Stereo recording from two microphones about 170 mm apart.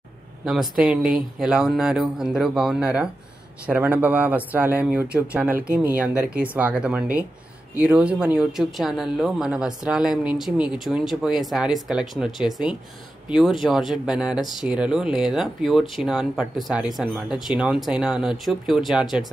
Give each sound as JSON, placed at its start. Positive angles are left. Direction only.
{"t": 0.5, "sound": "speech", "side_deg": -5}